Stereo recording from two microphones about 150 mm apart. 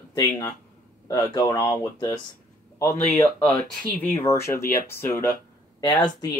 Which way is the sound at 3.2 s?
5° left (ahead or behind).